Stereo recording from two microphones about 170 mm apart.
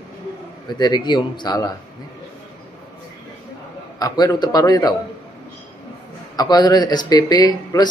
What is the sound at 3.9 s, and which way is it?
A man's voice, 20° left (ahead or behind).